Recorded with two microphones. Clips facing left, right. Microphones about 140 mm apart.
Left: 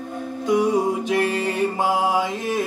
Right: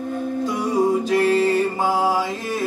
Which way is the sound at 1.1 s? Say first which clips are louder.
Right 4 dB; 20° left (ahead or behind).